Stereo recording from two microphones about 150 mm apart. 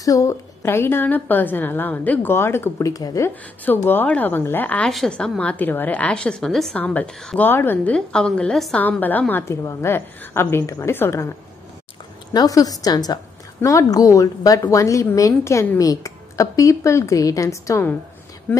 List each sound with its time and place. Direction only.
0.0 s a woman's voice: 20° left (ahead or behind)
12.3 s a woman's voice: 25° left (ahead or behind)